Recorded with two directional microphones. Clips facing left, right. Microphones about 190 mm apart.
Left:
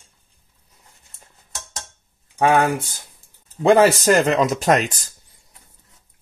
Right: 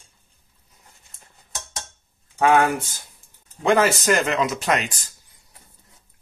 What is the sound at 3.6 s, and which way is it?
Speech, 35° left (ahead or behind).